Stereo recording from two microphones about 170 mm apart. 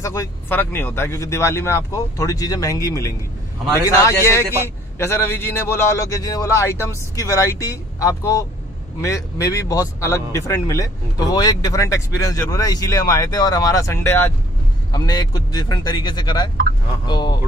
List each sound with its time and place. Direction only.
0.0 s a man's voice: 15° left (ahead or behind)
14.9 s speech: 25° left (ahead or behind)